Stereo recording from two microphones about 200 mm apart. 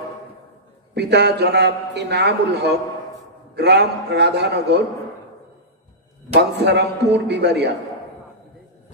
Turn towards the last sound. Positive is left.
turn(degrees=-55)  # may be behind; listen again after turning